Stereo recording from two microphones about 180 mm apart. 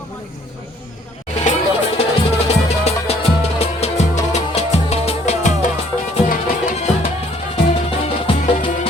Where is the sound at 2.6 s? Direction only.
35° left (ahead or behind).